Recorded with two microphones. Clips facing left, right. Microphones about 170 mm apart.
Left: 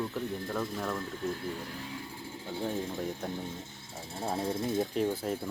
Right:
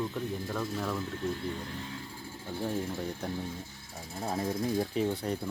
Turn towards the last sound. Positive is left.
turn(degrees=0)  # may be behind; listen again after turning